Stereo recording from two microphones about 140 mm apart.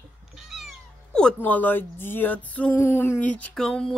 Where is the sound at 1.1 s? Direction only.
10° left (ahead or behind).